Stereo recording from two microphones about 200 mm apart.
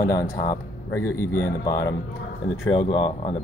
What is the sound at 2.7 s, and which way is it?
Speech, 25° left (ahead or behind).